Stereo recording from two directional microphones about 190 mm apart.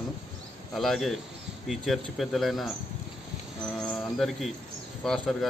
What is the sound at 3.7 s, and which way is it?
Speech, 5° left (ahead or behind).